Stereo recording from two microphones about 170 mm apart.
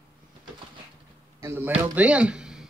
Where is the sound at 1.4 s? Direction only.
15° right (ahead or behind).